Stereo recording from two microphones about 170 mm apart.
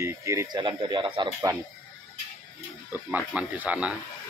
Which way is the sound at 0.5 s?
30° right (ahead or behind).